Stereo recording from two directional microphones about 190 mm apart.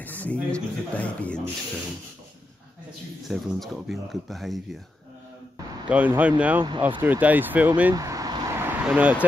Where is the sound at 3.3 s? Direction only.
Centre (ahead or behind).